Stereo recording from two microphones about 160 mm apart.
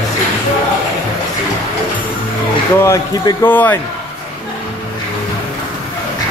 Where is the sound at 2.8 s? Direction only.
15° left (ahead or behind).